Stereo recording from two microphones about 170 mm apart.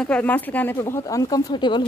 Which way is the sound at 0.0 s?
10° left (ahead or behind).